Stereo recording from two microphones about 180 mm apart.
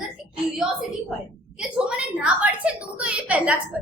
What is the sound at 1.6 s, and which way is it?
A woman's voice, 5° right (ahead or behind).